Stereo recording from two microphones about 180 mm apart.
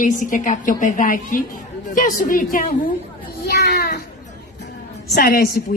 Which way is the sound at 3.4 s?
65° left (ahead or behind).